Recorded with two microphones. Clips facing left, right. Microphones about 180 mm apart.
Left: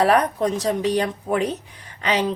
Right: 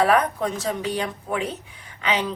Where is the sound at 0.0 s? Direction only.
35° left (ahead or behind).